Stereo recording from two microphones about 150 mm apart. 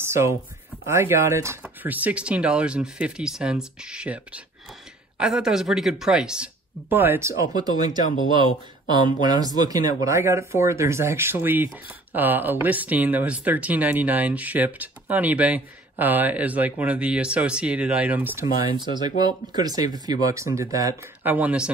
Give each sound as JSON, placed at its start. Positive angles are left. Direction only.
{"t": 0.0, "sound": "a sound", "side_deg": -15}
{"t": 0.8, "sound": "speech", "side_deg": -15}
{"t": 18.8, "sound": "speech", "side_deg": -30}